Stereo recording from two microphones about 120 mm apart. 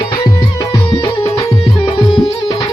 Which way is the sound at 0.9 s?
40° left (ahead or behind).